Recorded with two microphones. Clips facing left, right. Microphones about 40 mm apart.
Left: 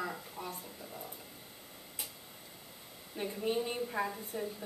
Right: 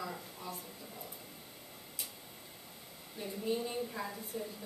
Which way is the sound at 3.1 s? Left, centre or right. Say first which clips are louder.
Left 2 dB; left.